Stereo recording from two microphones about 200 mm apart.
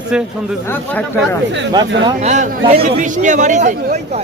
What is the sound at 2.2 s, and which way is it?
Speech, 35° right (ahead or behind).